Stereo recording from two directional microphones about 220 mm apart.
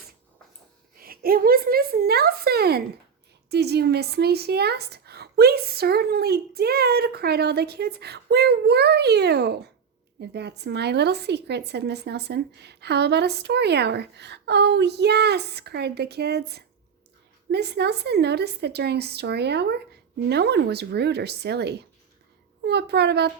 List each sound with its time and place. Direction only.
0.9 s a woman's voice: 40° right (ahead or behind)